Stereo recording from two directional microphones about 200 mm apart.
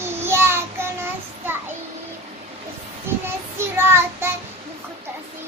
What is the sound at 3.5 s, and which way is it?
Child singing, 10° right (ahead or behind).